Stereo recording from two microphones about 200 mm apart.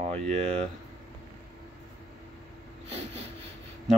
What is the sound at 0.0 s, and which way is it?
Speech, 35° right (ahead or behind).